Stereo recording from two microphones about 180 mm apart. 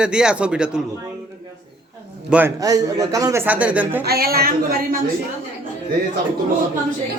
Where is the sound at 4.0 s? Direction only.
60° right (ahead or behind).